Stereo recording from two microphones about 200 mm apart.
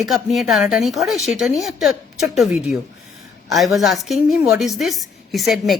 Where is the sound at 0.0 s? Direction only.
Centre (ahead or behind).